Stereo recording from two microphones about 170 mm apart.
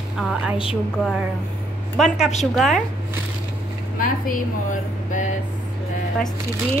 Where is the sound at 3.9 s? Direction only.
55° left (ahead or behind).